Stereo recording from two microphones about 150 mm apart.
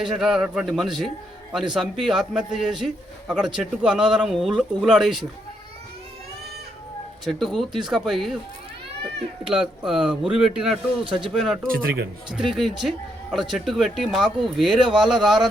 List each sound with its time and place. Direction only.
0.0 s a man's voice: centre (ahead or behind)
7.3 s a man's voice: centre (ahead or behind)
9.8 s a man's voice: 5° right (ahead or behind)
11.7 s a man's voice: 80° right
12.3 s a man's voice: centre (ahead or behind)